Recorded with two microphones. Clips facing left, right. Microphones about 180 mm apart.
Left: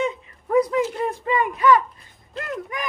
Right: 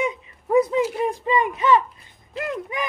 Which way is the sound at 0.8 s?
10° right (ahead or behind).